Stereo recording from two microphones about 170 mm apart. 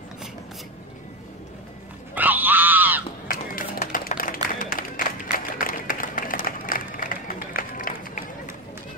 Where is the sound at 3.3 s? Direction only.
55° left (ahead or behind).